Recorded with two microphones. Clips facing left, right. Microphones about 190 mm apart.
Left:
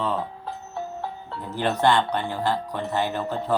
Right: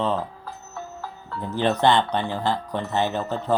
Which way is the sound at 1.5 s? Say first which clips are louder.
Right 1 dB; 20° right (ahead or behind).